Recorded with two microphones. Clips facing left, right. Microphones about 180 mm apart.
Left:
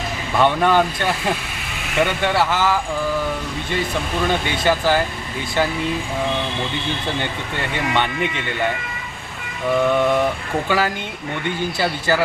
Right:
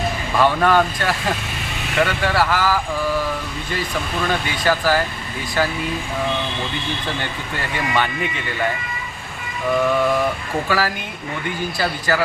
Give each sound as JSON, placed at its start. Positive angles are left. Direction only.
{"t": 0.3, "sound": "speech", "side_deg": 20}
{"t": 4.3, "sound": "speech", "side_deg": 25}
{"t": 7.9, "sound": "speech", "side_deg": 25}
{"t": 10.7, "sound": "speech", "side_deg": 25}